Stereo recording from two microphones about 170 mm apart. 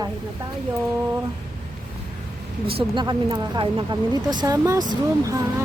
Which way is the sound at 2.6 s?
30° right (ahead or behind).